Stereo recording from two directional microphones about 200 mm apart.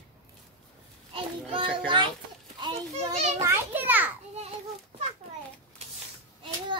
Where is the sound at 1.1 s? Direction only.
25° right (ahead or behind).